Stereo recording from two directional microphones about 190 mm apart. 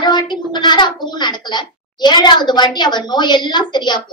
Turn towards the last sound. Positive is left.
turn(degrees=25)  # may be behind; listen again after turning